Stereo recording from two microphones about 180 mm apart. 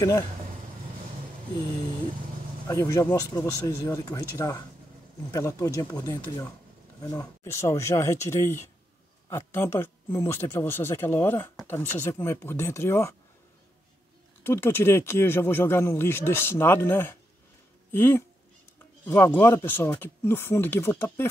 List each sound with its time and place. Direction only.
2.7 s speech: 15° left (ahead or behind)
14.4 s speech: 15° left (ahead or behind)